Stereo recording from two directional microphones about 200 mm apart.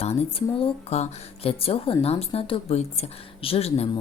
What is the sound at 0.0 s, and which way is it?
Speech, 30° left (ahead or behind).